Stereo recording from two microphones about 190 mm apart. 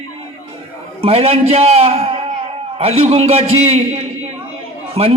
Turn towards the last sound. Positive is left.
turn(degrees=-30)  # may be behind; listen again after turning